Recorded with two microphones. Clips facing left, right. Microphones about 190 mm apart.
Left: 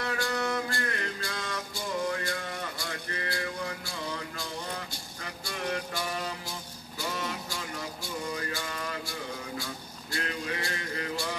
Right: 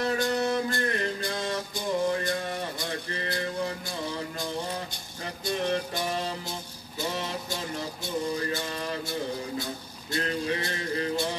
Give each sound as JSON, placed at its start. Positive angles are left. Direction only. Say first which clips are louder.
{"t": 0.0, "sound": "music", "louder": "right 5 dB", "side_deg": -25}
{"t": 2.0, "sound": "mantra", "louder": "right 5 dB", "side_deg": -25}
{"t": 5.2, "sound": "music", "louder": "right 6 dB", "side_deg": -25}
{"t": 10.1, "sound": "music", "louder": "right 5 dB", "side_deg": -25}